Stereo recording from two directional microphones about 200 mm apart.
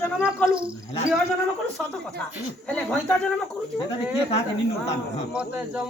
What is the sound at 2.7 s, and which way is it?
Speech, 5° left (ahead or behind).